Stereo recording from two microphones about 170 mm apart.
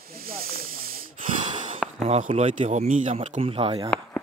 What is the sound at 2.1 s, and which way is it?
Speech, 40° right (ahead or behind).